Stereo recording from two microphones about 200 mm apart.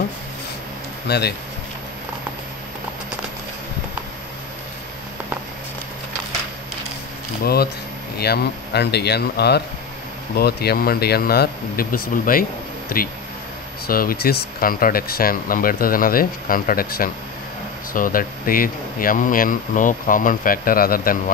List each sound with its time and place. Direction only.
1.0 s speech: 55° left (ahead or behind)
7.4 s speech: 50° left (ahead or behind)